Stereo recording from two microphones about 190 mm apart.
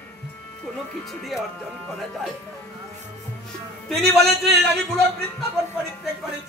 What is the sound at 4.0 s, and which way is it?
Speech, 60° right (ahead or behind).